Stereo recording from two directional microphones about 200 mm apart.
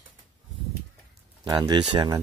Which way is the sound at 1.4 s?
20° right (ahead or behind).